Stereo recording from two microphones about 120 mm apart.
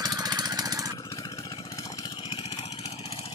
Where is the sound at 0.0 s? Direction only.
35° right (ahead or behind).